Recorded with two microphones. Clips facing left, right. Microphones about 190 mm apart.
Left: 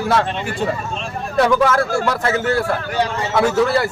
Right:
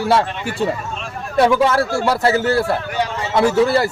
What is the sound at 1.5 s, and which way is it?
A man's voice, 30° right (ahead or behind).